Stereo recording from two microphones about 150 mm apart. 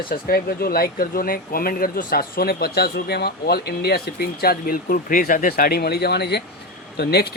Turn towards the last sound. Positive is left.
turn(degrees=90)